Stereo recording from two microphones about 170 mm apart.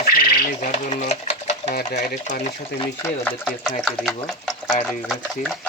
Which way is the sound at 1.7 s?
75° left (ahead or behind).